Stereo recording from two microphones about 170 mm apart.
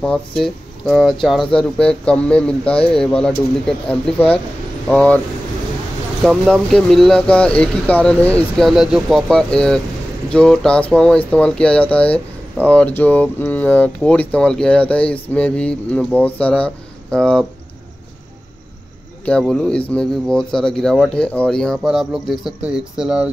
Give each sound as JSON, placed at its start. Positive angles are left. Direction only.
{"t": 0.0, "sound": "speech", "side_deg": 5}
{"t": 4.8, "sound": "speech", "side_deg": 5}
{"t": 6.2, "sound": "speech", "side_deg": 0}
{"t": 19.2, "sound": "speech", "side_deg": 5}